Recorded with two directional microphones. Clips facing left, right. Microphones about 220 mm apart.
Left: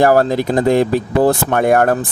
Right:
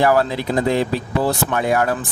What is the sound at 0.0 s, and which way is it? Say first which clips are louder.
Speech: left 5 dB; 45° left (ahead or behind).